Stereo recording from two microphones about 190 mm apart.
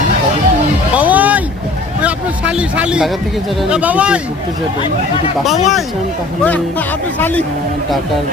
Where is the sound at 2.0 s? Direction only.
5° right (ahead or behind).